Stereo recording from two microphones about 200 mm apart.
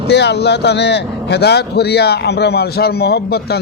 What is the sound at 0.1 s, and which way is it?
A man's voice, 60° left (ahead or behind).